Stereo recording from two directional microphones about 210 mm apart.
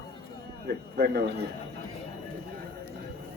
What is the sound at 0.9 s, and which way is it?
Speech, 50° right (ahead or behind).